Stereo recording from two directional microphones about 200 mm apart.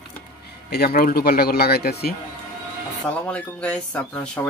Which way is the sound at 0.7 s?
50° left (ahead or behind).